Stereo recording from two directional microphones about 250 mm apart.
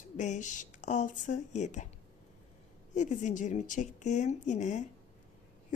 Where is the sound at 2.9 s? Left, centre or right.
Left.